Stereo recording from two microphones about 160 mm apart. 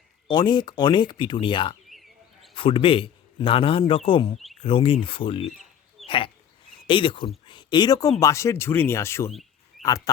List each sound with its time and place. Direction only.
0.3 s speech: 25° left (ahead or behind)
1.9 s frog: centre (ahead or behind)
2.6 s a man's voice: 35° left (ahead or behind)
6.1 s a sound: 35° left (ahead or behind)
6.8 s a man's voice: 30° left (ahead or behind); by 9.3 s 15° left (ahead or behind)
9.3 s a sound: centre (ahead or behind)